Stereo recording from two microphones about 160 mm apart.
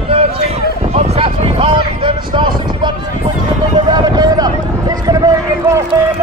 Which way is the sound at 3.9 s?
25° right (ahead or behind).